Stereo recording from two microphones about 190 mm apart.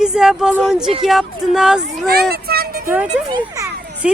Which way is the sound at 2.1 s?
55° right (ahead or behind).